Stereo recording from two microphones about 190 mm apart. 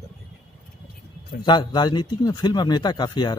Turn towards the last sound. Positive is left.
turn(degrees=20)  # may be behind; listen again after turning